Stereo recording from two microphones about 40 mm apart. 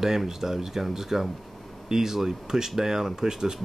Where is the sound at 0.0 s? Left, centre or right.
Centre.